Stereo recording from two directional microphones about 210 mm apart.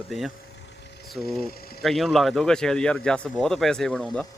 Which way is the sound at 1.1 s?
Centre (ahead or behind).